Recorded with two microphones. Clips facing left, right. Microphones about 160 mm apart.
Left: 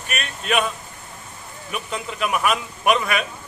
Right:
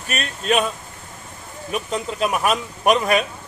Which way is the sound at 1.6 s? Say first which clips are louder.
Right 4 dB; 35° right (ahead or behind).